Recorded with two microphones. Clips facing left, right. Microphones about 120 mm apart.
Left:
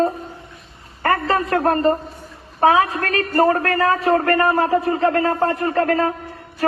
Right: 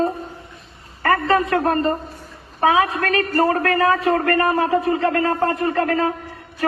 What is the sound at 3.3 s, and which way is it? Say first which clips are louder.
Speech: left 3 dB; 50° left (ahead or behind).